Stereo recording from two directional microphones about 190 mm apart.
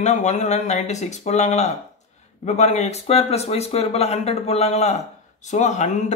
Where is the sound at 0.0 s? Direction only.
35° left (ahead or behind).